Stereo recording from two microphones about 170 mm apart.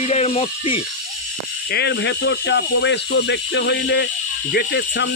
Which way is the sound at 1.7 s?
80° left.